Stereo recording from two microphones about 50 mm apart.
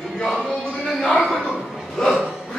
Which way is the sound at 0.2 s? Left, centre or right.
Centre.